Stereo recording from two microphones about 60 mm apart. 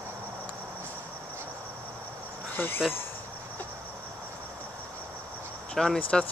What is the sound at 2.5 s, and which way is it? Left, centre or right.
Speech, left.